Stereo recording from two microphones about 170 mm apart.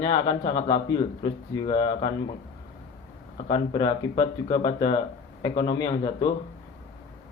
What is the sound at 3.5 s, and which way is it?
A man's voice, 25° left (ahead or behind).